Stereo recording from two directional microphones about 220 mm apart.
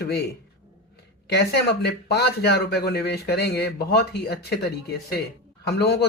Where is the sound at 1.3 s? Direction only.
50° left (ahead or behind).